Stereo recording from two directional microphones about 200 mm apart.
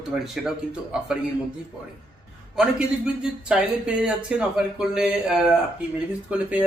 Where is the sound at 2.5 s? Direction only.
5° right (ahead or behind).